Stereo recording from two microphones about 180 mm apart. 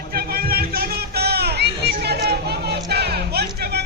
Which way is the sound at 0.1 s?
60° right (ahead or behind).